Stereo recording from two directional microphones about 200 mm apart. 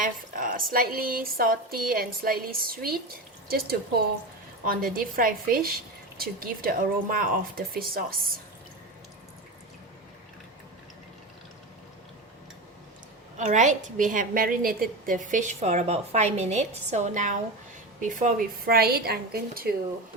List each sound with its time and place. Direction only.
0.0 s speech: 45° right (ahead or behind)
4.6 s speech: 45° right (ahead or behind)
13.3 s a woman's voice: 35° right (ahead or behind)